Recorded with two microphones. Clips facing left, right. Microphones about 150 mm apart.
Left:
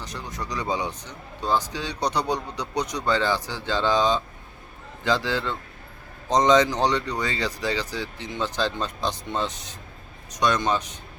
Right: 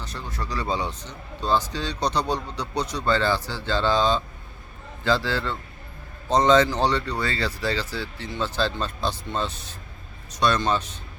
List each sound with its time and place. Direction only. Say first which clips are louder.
0.0 s speech: even; 15° left (ahead or behind)